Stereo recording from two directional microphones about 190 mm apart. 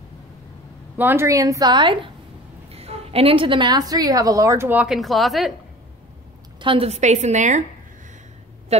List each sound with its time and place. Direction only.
0.9 s a woman's voice: 10° right (ahead or behind)
6.6 s a woman's voice: 30° right (ahead or behind)